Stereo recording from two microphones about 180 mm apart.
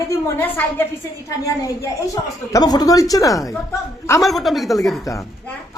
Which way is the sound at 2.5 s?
20° left (ahead or behind).